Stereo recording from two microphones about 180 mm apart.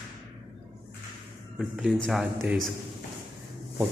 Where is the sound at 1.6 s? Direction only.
Centre (ahead or behind).